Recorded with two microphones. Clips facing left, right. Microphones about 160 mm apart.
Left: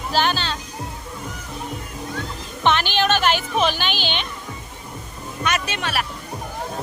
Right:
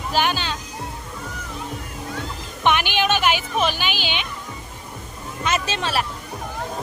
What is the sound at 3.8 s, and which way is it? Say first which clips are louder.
Speech: left 1 dB; 5° right (ahead or behind).